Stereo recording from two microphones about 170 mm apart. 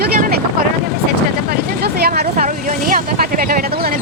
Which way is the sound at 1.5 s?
65° right (ahead or behind).